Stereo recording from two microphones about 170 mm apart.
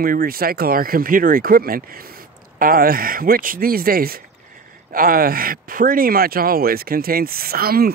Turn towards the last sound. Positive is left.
turn(degrees=-65)  # may be behind; listen again after turning